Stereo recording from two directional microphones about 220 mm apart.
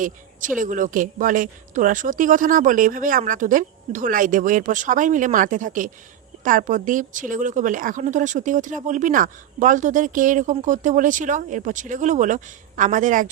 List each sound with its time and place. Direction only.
0.6 s speech: 35° right (ahead or behind)